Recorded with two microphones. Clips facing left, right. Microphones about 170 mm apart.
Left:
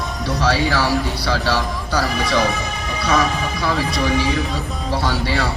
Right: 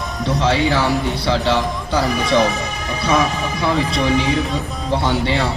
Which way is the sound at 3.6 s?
20° right (ahead or behind).